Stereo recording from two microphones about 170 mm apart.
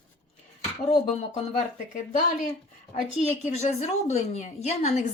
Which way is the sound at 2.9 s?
45° left (ahead or behind).